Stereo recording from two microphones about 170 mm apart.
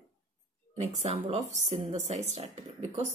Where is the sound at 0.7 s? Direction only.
40° right (ahead or behind).